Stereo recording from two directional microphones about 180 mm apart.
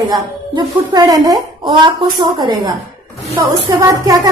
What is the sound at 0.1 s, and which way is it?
A woman's voice, 20° right (ahead or behind).